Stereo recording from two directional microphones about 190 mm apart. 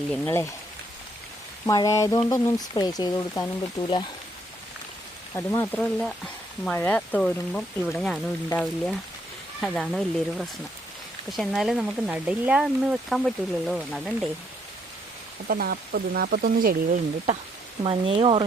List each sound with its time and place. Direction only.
0.1 s speech: 15° left (ahead or behind)
1.6 s speech: 20° left (ahead or behind)
5.3 s speech: 10° left (ahead or behind)
9.6 s speech: centre (ahead or behind)
15.4 s speech: 50° right (ahead or behind)
17.8 s speech: 30° right (ahead or behind)